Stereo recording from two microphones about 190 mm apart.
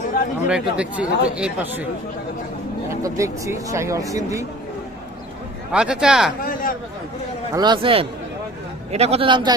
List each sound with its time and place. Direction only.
0.4 s speech: 5° right (ahead or behind)
2.9 s speech: 15° right (ahead or behind)
5.7 s speech: 5° right (ahead or behind)
6.4 s speech: 50° left (ahead or behind)
7.5 s a man's voice: 20° right (ahead or behind)